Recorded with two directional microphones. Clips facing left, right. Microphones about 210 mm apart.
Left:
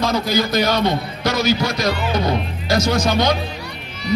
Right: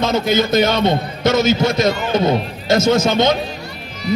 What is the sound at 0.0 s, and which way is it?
A man's voice, 25° right (ahead or behind).